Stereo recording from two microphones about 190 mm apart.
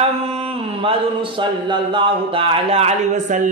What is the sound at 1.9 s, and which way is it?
Speech, 25° right (ahead or behind).